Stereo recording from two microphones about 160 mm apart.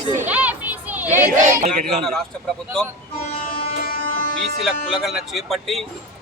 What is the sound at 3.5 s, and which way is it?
Music, 65° left (ahead or behind).